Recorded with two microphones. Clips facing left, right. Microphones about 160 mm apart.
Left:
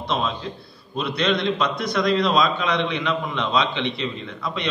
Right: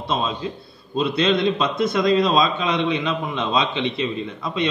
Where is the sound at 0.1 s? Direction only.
20° right (ahead or behind).